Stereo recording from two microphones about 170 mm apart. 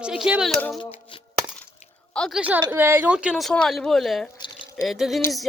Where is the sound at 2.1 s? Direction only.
5° left (ahead or behind).